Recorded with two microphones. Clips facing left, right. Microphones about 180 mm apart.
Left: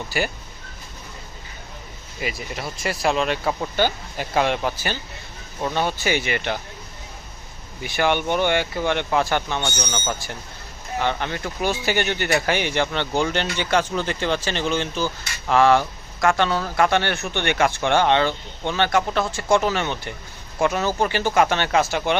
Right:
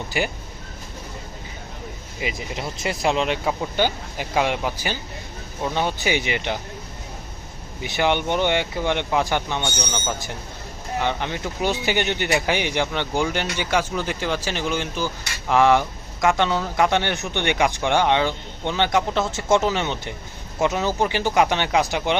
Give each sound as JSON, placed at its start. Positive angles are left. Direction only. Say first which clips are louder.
{"t": 0.1, "sound": "speech", "louder": "even", "side_deg": -15}
{"t": 2.2, "sound": "speech", "louder": "right 1 dB", "side_deg": -20}
{"t": 7.9, "sound": "speech", "louder": "even", "side_deg": -20}